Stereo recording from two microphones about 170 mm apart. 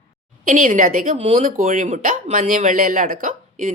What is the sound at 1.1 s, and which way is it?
Speech, 35° right (ahead or behind).